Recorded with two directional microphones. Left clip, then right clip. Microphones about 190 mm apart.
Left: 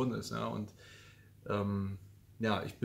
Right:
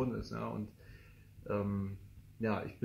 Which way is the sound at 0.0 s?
15° left (ahead or behind).